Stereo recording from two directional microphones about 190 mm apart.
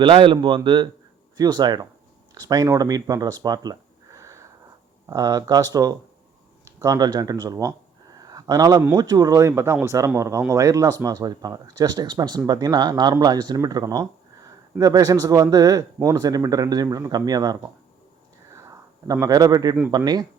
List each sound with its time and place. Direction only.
0.0 s speech: 25° right (ahead or behind)
18.5 s a sound: 15° right (ahead or behind)
20.0 s speech: 20° right (ahead or behind)